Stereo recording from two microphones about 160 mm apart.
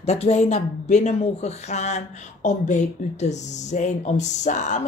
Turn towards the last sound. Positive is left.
turn(degrees=50)  # may be behind; listen again after turning